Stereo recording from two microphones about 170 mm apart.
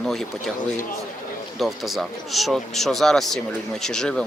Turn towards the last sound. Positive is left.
turn(degrees=5)  # may be behind; listen again after turning